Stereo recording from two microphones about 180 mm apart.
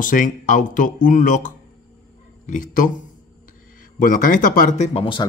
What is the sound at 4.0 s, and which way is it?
Speech, 50° left (ahead or behind).